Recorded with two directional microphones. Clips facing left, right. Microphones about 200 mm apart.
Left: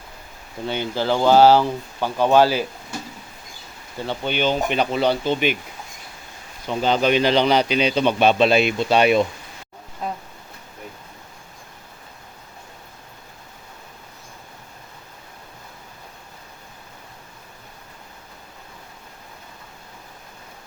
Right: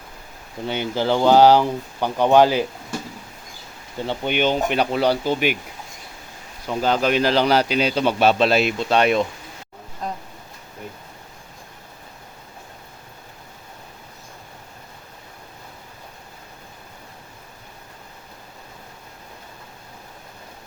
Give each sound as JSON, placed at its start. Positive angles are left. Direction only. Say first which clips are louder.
{"t": 0.7, "sound": "speech", "louder": "right 1 dB", "side_deg": -15}
{"t": 3.9, "sound": "speech", "louder": "right 2 dB", "side_deg": -15}
{"t": 6.7, "sound": "speech", "louder": "left 1 dB", "side_deg": -5}
{"t": 10.0, "sound": "a sound", "louder": "left 1 dB", "side_deg": 5}